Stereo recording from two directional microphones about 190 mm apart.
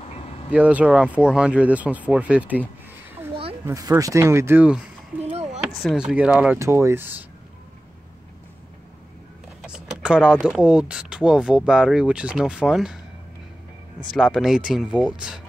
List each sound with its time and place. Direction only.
0.5 s speech: 5° right (ahead or behind)
3.6 s speech: 15° right (ahead or behind)
5.2 s a sound: 35° right (ahead or behind)
5.8 s speech: centre (ahead or behind)
9.6 s a sound: 5° right (ahead or behind)
10.4 s speech: 5° right (ahead or behind)
14.1 s speech: centre (ahead or behind)